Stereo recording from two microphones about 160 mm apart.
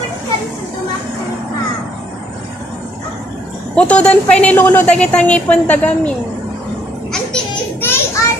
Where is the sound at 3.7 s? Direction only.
5° left (ahead or behind).